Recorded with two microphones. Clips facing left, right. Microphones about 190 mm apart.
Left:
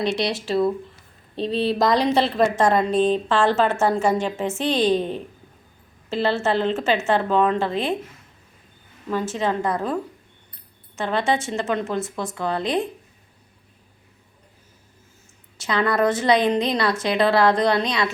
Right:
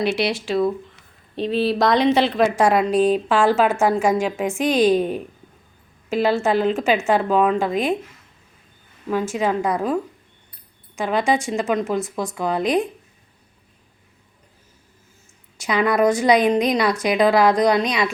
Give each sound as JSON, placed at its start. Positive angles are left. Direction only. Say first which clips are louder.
{"t": 0.0, "sound": "speech", "louder": "right 2 dB", "side_deg": -5}
{"t": 2.1, "sound": "speech", "louder": "right 1 dB", "side_deg": 0}
{"t": 2.6, "sound": "a woman's voice", "louder": "right 3 dB", "side_deg": -10}
{"t": 9.0, "sound": "a woman's voice", "louder": "right 2 dB", "side_deg": -10}
{"t": 15.5, "sound": "a woman's voice", "louder": "right 2 dB", "side_deg": -15}